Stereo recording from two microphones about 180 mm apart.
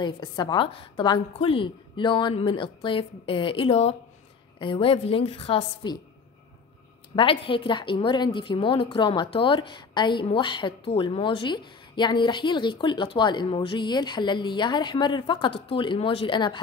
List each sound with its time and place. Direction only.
0.0 s a woman's voice: 25° left (ahead or behind)
7.2 s a woman's voice: 30° left (ahead or behind)